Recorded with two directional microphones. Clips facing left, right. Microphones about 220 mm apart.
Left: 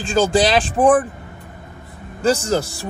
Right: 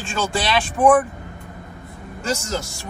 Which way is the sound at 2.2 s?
35° left (ahead or behind).